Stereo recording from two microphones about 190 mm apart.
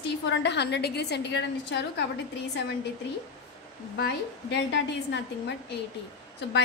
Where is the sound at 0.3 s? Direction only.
65° left (ahead or behind).